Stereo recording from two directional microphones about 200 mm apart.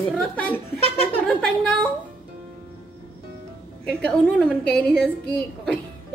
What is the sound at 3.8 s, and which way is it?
A woman's voice, 5° left (ahead or behind).